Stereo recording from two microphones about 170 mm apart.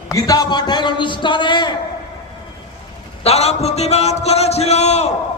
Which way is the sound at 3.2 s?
40° left (ahead or behind).